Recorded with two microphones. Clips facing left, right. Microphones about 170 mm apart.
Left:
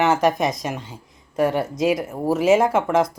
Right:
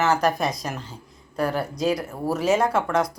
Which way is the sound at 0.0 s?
20° left (ahead or behind).